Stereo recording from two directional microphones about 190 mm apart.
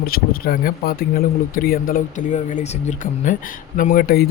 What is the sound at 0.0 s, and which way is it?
A man's voice, 50° left (ahead or behind).